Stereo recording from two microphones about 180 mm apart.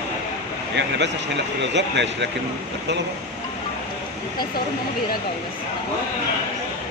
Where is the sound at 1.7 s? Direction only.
75° right (ahead or behind).